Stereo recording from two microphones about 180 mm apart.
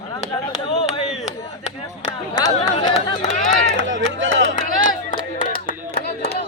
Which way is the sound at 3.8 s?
90° right.